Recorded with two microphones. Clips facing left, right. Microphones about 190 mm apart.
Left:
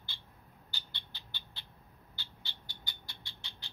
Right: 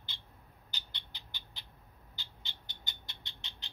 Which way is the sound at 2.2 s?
20° right (ahead or behind).